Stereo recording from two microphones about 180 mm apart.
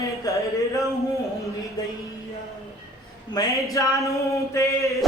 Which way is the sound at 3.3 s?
20° left (ahead or behind).